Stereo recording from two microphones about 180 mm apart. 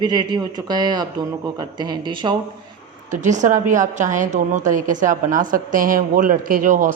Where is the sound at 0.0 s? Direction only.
25° right (ahead or behind).